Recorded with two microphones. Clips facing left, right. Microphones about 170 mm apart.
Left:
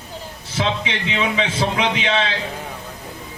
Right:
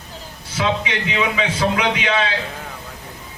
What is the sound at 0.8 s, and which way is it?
Speech, 25° left (ahead or behind).